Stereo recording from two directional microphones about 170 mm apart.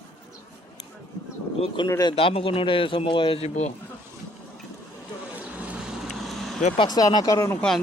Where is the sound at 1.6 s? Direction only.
30° left (ahead or behind).